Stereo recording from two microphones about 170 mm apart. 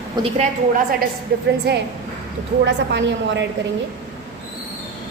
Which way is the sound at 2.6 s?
90° right.